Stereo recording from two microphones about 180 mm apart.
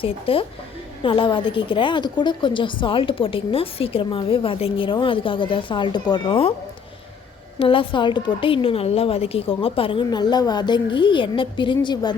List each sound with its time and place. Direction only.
0.0 s a woman's voice: 30° left (ahead or behind)
7.6 s a woman's voice: 30° left (ahead or behind)